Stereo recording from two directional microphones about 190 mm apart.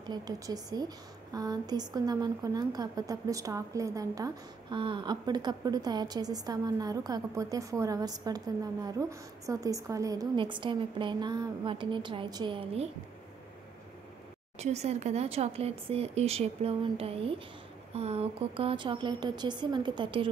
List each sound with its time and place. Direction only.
0.0 s a woman's voice: 20° right (ahead or behind)
14.6 s a woman's voice: 35° right (ahead or behind)